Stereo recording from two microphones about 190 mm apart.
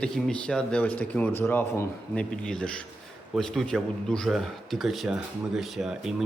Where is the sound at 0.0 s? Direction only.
5° left (ahead or behind).